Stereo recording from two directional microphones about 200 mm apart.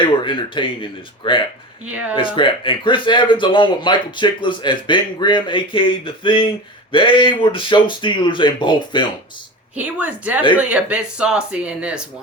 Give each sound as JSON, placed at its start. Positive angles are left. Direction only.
{"t": 0.0, "sound": "speech", "side_deg": 25}
{"t": 1.9, "sound": "a woman's voice", "side_deg": -5}
{"t": 2.1, "sound": "speech", "side_deg": 25}
{"t": 9.7, "sound": "a woman's voice", "side_deg": -5}